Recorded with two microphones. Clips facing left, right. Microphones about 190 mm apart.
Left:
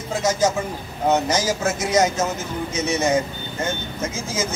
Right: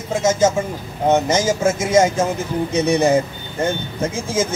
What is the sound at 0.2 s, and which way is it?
A man's voice, 25° right (ahead or behind).